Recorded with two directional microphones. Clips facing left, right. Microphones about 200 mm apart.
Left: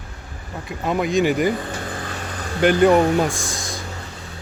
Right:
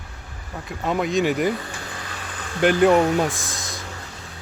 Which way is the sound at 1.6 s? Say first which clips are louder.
Left 6 dB; 45° left (ahead or behind).